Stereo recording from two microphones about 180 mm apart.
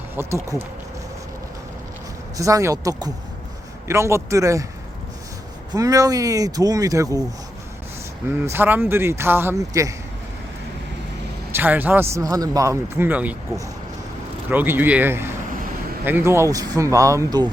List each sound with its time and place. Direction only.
0.2 s speech: 15° right (ahead or behind)
2.4 s speech: 15° right (ahead or behind)
5.7 s speech: 20° right (ahead or behind)
8.5 s speech: 10° right (ahead or behind)
11.5 s speech: 10° right (ahead or behind)